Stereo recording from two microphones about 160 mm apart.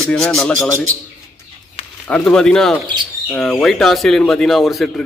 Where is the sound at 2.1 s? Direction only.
5° left (ahead or behind).